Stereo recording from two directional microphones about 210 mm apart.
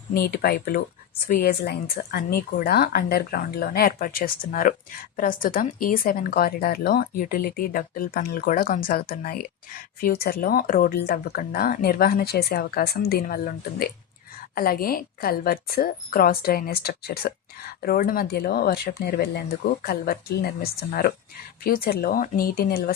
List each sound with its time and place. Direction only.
0.1 s a woman's voice: 45° left (ahead or behind)